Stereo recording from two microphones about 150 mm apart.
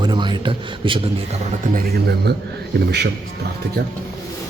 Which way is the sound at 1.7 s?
90° right.